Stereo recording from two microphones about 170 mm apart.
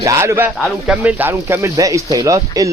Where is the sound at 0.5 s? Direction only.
Centre (ahead or behind).